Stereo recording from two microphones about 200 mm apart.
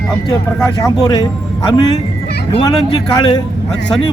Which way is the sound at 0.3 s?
15° left (ahead or behind).